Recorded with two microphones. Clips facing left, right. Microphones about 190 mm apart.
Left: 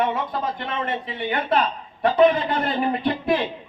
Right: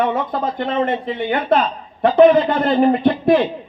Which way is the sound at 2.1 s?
55° right (ahead or behind).